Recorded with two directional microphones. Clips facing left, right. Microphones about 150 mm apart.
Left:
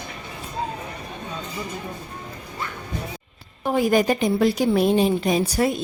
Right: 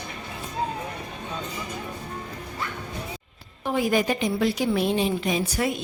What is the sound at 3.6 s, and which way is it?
A woman's voice, 45° left (ahead or behind).